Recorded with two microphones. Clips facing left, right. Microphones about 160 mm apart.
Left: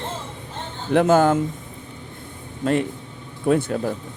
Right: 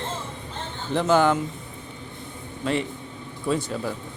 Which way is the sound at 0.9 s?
50° left (ahead or behind).